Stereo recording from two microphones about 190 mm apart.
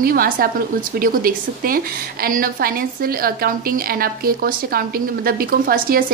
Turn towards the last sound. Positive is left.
turn(degrees=-50)  # may be behind; listen again after turning